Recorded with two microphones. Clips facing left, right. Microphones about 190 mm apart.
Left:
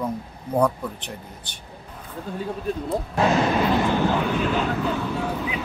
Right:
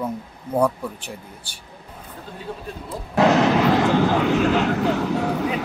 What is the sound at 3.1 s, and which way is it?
Speech, 80° right.